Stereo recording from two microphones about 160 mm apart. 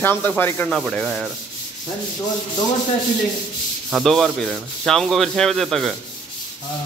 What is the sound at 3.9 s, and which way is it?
Sanding, centre (ahead or behind).